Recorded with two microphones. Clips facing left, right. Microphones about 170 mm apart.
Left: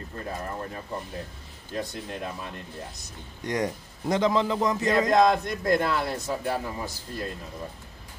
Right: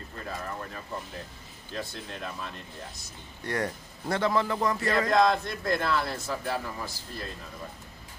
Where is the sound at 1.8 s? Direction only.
15° left (ahead or behind).